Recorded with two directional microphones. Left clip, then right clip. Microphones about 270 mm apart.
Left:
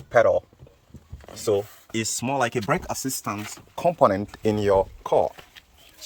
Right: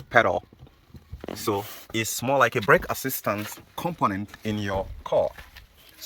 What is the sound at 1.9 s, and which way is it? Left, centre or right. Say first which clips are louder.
Speech: right 3 dB; centre.